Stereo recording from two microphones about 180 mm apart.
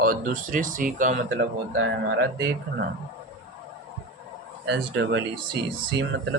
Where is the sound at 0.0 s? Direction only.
50° right (ahead or behind).